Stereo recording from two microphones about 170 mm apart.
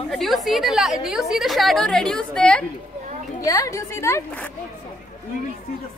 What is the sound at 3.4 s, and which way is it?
A woman's voice, 20° left (ahead or behind).